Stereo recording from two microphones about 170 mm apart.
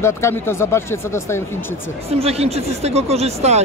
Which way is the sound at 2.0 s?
35° right (ahead or behind).